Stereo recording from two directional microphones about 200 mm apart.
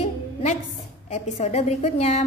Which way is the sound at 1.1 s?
35° left (ahead or behind).